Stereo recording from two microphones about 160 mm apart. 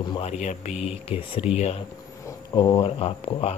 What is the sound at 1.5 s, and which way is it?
Speech, 45° left (ahead or behind).